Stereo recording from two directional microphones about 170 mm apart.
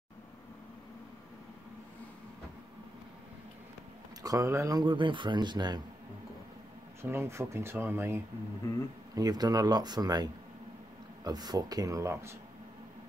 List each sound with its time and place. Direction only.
4.2 s speech: 20° right (ahead or behind)
7.0 s speech: 15° right (ahead or behind)
8.6 s speech: 15° left (ahead or behind)
9.1 s speech: 20° right (ahead or behind)